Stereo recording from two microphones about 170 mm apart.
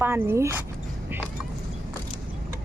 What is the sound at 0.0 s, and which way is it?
Speech, 15° right (ahead or behind).